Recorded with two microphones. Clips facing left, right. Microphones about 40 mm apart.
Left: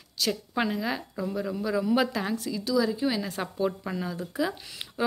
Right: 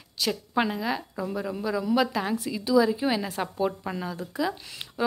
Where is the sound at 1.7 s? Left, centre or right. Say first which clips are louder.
Right 1 dB; centre.